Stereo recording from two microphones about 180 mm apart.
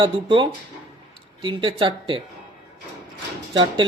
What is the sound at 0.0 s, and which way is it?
Speech, 25° right (ahead or behind).